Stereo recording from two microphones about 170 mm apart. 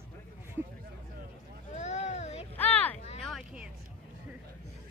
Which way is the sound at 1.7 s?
45° left (ahead or behind).